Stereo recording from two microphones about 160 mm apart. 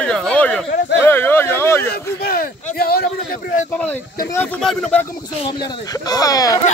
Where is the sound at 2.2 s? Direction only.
70° left (ahead or behind).